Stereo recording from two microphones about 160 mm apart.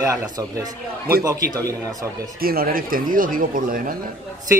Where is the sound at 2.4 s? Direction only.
65° right (ahead or behind).